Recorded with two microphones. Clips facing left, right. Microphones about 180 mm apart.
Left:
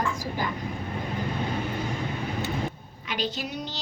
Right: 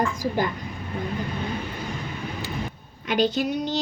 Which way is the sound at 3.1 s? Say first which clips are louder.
Right 9 dB; 50° right (ahead or behind).